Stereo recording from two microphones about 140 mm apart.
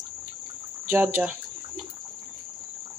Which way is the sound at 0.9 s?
10° right (ahead or behind).